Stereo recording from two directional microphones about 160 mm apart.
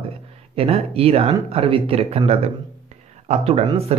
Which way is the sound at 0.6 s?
35° right (ahead or behind).